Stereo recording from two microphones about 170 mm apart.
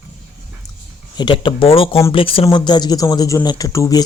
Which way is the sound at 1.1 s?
30° left (ahead or behind).